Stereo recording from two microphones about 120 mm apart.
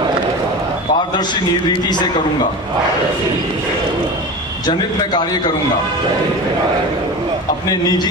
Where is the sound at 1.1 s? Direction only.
40° left (ahead or behind).